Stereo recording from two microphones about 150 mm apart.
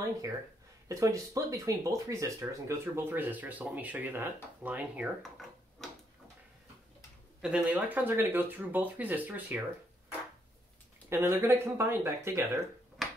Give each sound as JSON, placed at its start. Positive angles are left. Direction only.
{"t": 0.8, "sound": "speech", "side_deg": -20}
{"t": 5.8, "sound": "a sound", "side_deg": 5}
{"t": 7.4, "sound": "speech", "side_deg": -10}
{"t": 11.1, "sound": "speech", "side_deg": -15}
{"t": 13.0, "sound": "tick-tock", "side_deg": 0}